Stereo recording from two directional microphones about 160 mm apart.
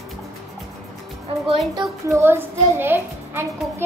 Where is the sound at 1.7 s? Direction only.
25° right (ahead or behind).